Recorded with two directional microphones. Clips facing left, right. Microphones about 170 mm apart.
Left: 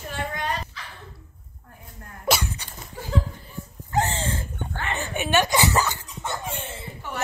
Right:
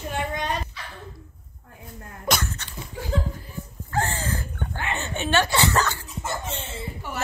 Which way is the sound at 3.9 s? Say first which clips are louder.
Left 2 dB; 20° left (ahead or behind).